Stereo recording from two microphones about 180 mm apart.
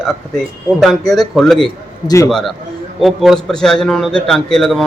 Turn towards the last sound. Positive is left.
turn(degrees=0)  # may be behind; listen again after turning